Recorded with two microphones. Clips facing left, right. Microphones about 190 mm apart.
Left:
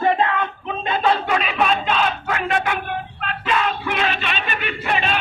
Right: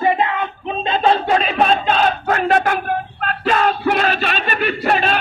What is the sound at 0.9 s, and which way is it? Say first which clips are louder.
Battle cry: right 4 dB; 30° right (ahead or behind).